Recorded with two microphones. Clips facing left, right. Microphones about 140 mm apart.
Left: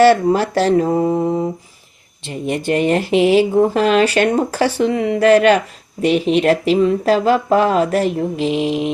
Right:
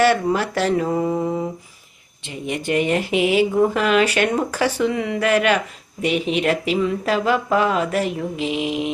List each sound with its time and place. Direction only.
0.0 s speech: 30° left (ahead or behind)